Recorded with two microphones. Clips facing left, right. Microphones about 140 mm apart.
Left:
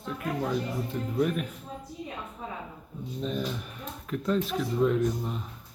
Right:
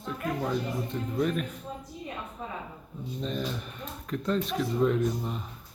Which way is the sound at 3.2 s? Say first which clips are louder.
Left 1 dB; 5° left (ahead or behind).